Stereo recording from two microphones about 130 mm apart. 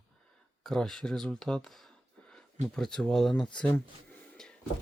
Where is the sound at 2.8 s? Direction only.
5° left (ahead or behind).